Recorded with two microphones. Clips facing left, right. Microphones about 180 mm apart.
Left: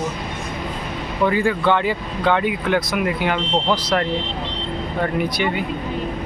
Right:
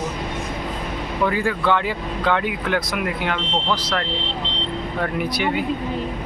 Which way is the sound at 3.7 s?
15° left (ahead or behind).